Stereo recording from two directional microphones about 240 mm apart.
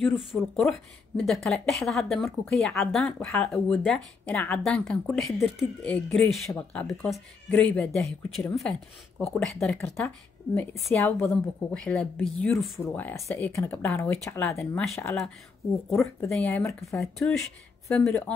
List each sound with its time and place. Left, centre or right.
0.4 s speech: centre